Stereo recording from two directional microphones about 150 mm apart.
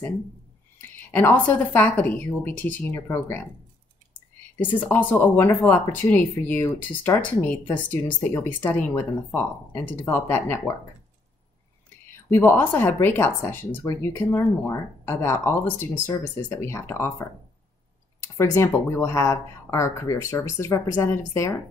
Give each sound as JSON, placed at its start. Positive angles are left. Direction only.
{"t": 0.7, "sound": "speech", "side_deg": 15}
{"t": 4.6, "sound": "speech", "side_deg": 10}
{"t": 12.3, "sound": "speech", "side_deg": 15}
{"t": 18.4, "sound": "speech", "side_deg": 20}